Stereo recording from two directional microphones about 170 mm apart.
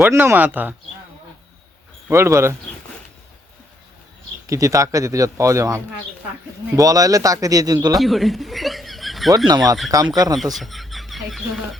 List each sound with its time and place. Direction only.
0.1 s speech: 15° right (ahead or behind)
2.0 s speech: 15° right (ahead or behind)
4.4 s speech: 20° right (ahead or behind)
7.9 s chuckle: centre (ahead or behind)
9.5 s speech: 25° right (ahead or behind)
10.3 s speech: centre (ahead or behind)